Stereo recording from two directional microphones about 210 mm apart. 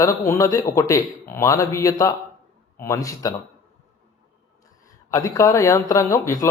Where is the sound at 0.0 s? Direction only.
15° left (ahead or behind).